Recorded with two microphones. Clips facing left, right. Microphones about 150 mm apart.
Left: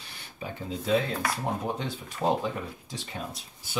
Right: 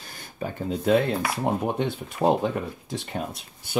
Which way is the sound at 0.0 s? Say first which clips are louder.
Right 6 dB; 45° right (ahead or behind).